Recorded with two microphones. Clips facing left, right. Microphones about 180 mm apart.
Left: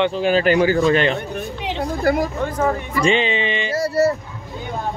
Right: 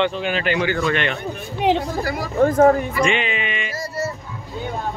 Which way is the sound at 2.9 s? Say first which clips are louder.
Left 2 dB; 35° left (ahead or behind).